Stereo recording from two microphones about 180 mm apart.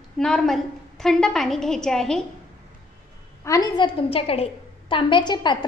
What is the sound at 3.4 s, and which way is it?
A woman's voice, 20° left (ahead or behind).